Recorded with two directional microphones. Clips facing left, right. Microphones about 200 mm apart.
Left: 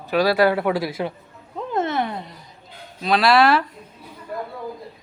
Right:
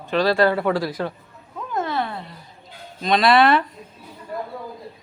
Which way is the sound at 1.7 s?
25° left (ahead or behind).